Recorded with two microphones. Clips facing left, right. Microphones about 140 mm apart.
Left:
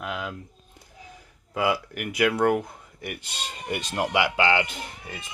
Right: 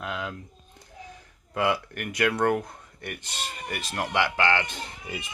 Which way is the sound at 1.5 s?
5° left (ahead or behind).